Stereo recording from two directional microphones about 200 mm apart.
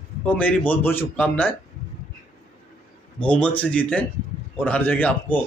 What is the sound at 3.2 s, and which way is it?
Speech, 5° left (ahead or behind).